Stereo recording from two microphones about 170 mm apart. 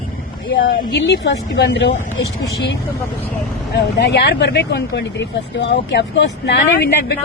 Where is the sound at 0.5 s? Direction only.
75° left (ahead or behind).